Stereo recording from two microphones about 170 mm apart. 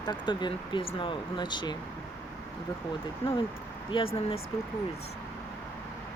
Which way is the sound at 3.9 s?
35° left (ahead or behind).